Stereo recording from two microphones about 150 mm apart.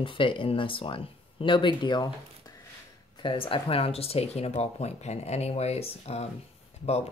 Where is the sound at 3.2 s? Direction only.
35° left (ahead or behind).